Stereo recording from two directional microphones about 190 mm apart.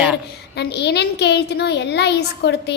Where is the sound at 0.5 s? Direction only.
60° left (ahead or behind).